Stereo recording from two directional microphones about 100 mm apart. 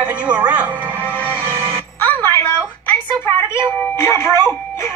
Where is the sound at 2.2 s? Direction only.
25° left (ahead or behind).